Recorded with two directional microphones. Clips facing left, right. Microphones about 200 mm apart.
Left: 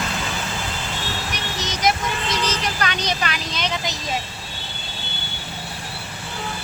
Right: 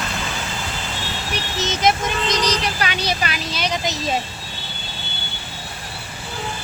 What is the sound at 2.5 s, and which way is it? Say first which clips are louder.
Vehicle: right 2 dB; 10° right (ahead or behind).